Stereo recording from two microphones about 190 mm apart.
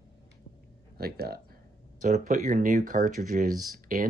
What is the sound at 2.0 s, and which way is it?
Speech, 40° right (ahead or behind).